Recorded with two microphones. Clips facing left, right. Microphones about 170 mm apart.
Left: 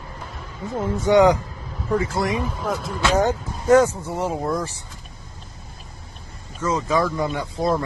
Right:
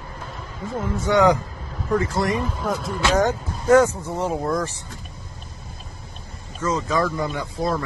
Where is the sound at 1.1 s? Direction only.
15° left (ahead or behind).